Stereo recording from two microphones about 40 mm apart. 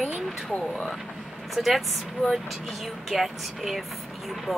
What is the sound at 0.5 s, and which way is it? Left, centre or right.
Speech, left.